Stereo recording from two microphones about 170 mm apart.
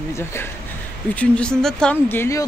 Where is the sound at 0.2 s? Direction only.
15° left (ahead or behind).